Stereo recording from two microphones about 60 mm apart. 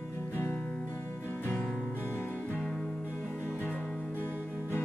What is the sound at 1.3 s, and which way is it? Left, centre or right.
Music, left.